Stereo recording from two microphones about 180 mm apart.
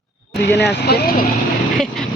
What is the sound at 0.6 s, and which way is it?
Speech, 65° left (ahead or behind).